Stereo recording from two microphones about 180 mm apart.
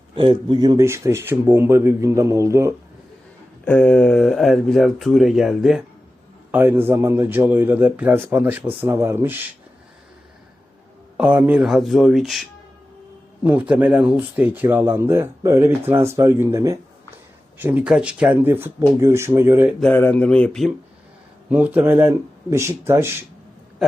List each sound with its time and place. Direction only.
0.2 s a man's voice: 30° right (ahead or behind)
3.6 s a man's voice: 5° left (ahead or behind); by 9.5 s 10° right (ahead or behind)
11.2 s a man's voice: 10° right (ahead or behind)
19.8 s speech: 10° left (ahead or behind)
21.5 s a man's voice: 10° right (ahead or behind)